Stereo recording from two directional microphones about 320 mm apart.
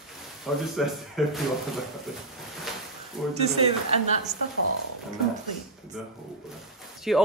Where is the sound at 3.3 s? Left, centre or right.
Centre.